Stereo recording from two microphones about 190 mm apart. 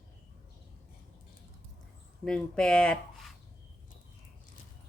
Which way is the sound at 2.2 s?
5° left (ahead or behind).